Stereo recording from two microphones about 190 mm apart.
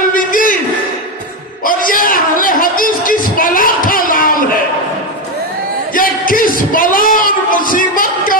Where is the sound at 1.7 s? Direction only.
45° left (ahead or behind).